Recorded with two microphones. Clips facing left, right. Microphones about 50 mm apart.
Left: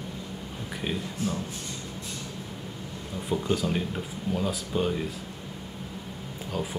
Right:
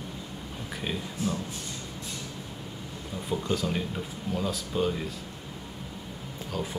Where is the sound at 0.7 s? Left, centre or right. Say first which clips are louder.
Left 2 dB; centre.